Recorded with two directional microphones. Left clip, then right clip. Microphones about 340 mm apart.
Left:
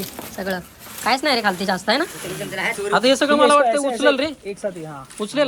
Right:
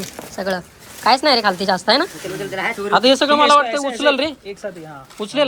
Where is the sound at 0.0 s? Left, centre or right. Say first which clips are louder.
Right 3 dB; centre.